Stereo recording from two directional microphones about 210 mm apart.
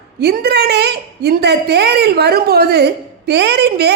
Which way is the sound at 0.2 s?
50° right (ahead or behind).